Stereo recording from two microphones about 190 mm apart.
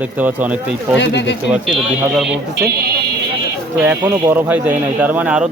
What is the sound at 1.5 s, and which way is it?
Speech, centre (ahead or behind).